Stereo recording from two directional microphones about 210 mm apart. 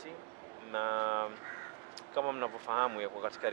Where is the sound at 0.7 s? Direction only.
20° right (ahead or behind).